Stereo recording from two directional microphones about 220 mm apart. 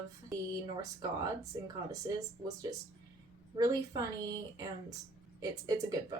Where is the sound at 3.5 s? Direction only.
15° right (ahead or behind).